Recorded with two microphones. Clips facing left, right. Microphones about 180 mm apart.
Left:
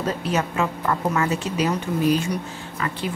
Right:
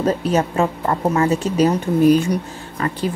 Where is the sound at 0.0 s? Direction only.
35° right (ahead or behind).